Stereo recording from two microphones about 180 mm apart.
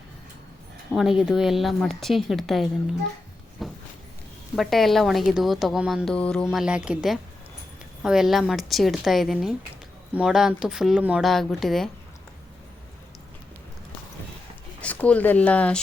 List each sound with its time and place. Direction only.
0.9 s a woman's voice: 5° right (ahead or behind)
3.6 s a sound: centre (ahead or behind)
4.5 s a woman's voice: centre (ahead or behind)
14.8 s speech: 5° left (ahead or behind)